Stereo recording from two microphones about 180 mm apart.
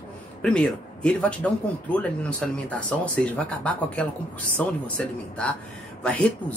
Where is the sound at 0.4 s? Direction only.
5° left (ahead or behind).